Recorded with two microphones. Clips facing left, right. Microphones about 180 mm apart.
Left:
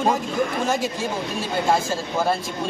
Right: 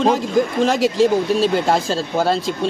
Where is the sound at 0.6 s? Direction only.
90° right.